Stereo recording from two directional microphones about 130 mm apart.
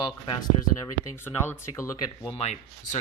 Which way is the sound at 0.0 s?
35° left (ahead or behind).